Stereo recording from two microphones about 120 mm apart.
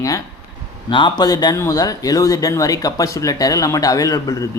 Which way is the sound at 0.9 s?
40° left (ahead or behind).